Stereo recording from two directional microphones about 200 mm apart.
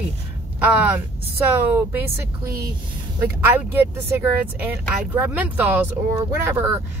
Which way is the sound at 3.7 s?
10° right (ahead or behind).